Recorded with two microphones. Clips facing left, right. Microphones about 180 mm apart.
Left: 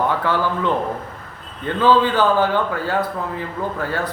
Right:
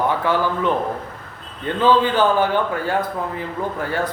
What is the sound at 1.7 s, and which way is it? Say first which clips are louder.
A man's voice: even; 15° right (ahead or behind).